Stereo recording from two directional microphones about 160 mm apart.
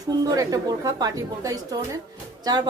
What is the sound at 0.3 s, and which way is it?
A woman's voice, 20° right (ahead or behind).